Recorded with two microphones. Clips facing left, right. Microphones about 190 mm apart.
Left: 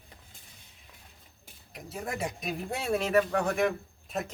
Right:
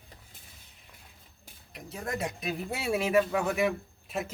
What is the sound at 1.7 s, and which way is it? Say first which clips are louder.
Speech: right 1 dB; centre (ahead or behind).